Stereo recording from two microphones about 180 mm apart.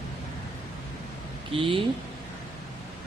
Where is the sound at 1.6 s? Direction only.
30° right (ahead or behind).